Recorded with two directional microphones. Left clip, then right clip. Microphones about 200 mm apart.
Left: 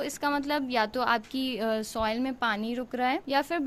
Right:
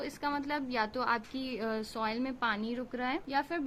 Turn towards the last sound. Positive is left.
turn(degrees=55)  # may be behind; listen again after turning